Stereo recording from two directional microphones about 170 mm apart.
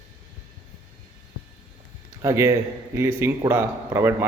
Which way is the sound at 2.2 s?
15° right (ahead or behind).